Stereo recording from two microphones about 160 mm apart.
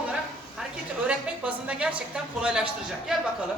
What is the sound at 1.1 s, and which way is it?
Speech, 5° right (ahead or behind).